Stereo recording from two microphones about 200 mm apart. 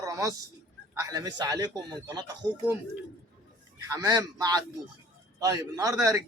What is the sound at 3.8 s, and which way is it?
A man's voice, 20° right (ahead or behind).